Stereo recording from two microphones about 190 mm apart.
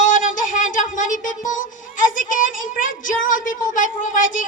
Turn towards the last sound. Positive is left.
turn(degrees=45)  # may be behind; listen again after turning